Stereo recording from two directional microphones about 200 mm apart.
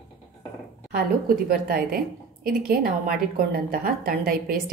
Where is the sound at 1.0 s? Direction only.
45° right (ahead or behind).